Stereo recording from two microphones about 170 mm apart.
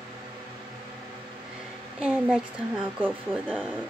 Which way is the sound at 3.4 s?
5° left (ahead or behind).